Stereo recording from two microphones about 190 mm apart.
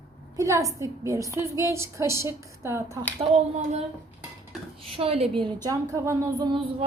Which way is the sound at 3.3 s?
35° right (ahead or behind).